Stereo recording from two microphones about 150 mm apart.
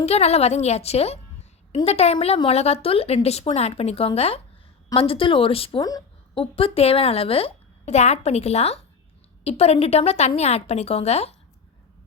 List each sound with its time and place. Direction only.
0.0 s a woman's voice: 45° left (ahead or behind)
5.8 s a sound: 25° left (ahead or behind)
6.4 s a woman's voice: 40° left (ahead or behind)